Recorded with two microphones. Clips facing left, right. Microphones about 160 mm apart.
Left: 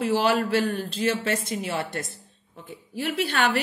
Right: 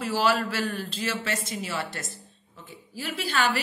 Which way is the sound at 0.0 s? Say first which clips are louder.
Left 3 dB; 55° left (ahead or behind).